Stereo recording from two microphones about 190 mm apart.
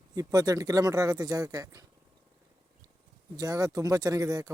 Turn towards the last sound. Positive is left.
turn(degrees=-20)  # may be behind; listen again after turning